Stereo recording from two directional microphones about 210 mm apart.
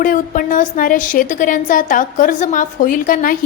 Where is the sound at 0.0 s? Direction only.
40° left (ahead or behind).